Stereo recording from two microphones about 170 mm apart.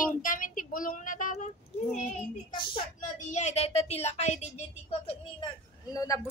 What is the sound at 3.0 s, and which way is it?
Speech, 45° left (ahead or behind).